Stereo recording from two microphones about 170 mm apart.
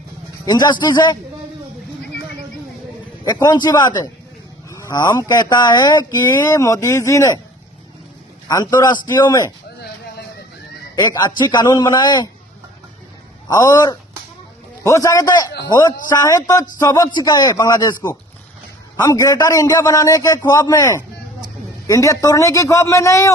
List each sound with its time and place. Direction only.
0.4 s speech: 25° left (ahead or behind)
3.2 s speech: 25° left (ahead or behind)
8.4 s speech: 25° left (ahead or behind)
11.0 s speech: 25° left (ahead or behind)
13.5 s speech: 20° left (ahead or behind)
19.0 s speech: 20° left (ahead or behind)